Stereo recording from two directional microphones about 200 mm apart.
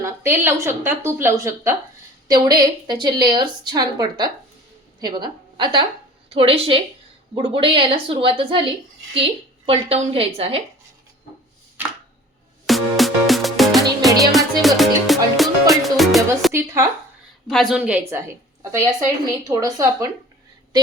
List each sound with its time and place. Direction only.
0.0 s a woman's voice: 10° right (ahead or behind); by 10.6 s 30° right (ahead or behind)
12.6 s music: centre (ahead or behind)
16.5 s a woman's voice: 15° right (ahead or behind)
17.5 s a woman's voice: centre (ahead or behind)